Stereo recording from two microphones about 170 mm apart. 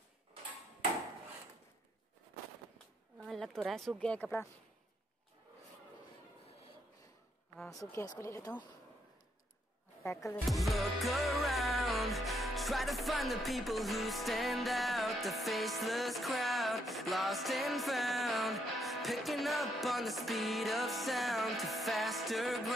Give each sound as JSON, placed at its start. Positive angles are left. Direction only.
{"t": 3.2, "sound": "speech", "side_deg": 0}
{"t": 7.9, "sound": "speech", "side_deg": 20}
{"t": 10.0, "sound": "speech", "side_deg": 15}
{"t": 10.5, "sound": "music", "side_deg": 0}